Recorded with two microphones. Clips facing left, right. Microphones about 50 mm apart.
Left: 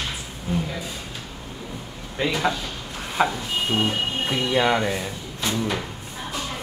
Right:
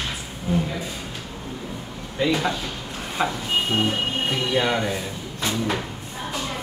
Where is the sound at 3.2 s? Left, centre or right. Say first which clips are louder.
Left 3 dB; centre.